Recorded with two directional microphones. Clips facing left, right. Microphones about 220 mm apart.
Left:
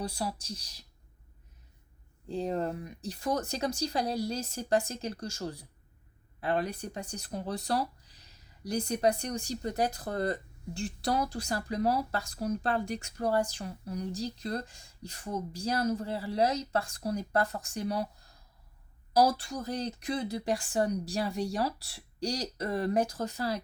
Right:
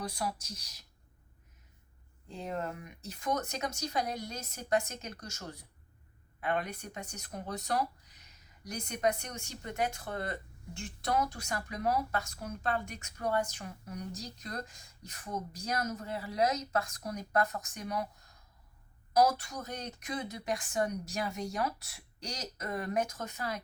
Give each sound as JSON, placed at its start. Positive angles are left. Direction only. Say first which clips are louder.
{"t": 0.0, "sound": "speech", "louder": "left 2 dB", "side_deg": 30}
{"t": 2.2, "sound": "speech", "louder": "left 6 dB", "side_deg": 35}